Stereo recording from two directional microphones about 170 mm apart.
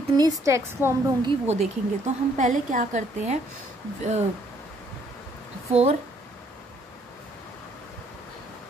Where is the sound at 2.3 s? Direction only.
45° right (ahead or behind).